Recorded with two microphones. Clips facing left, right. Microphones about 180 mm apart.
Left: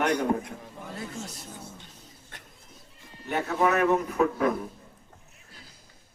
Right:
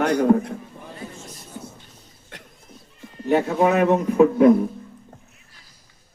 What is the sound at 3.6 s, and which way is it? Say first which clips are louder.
Speech: right 3 dB; 25° right (ahead or behind).